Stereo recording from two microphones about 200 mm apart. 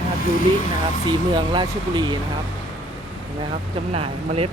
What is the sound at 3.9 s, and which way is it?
Speech, 30° right (ahead or behind).